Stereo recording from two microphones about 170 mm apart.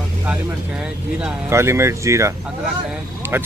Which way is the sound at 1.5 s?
15° right (ahead or behind).